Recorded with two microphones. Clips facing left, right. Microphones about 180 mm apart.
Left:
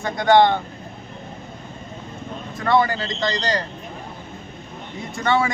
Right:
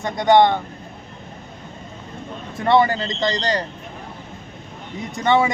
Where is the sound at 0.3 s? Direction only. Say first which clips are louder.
Even; 20° right (ahead or behind).